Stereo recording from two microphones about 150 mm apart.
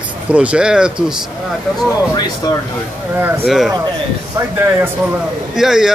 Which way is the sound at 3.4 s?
Centre (ahead or behind).